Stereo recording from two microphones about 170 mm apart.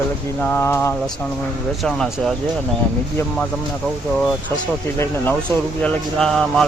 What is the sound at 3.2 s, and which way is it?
Speech, 15° left (ahead or behind).